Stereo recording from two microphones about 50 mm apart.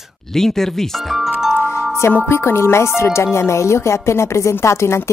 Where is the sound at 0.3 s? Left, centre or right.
Centre.